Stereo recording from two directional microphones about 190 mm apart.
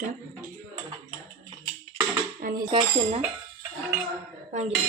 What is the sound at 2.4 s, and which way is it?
Dishes, 50° right (ahead or behind).